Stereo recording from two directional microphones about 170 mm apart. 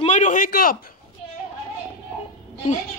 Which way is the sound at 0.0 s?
45° left (ahead or behind).